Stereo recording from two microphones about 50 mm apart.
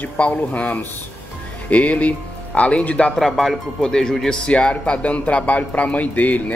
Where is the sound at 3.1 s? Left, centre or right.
Centre; by 6.4 s left.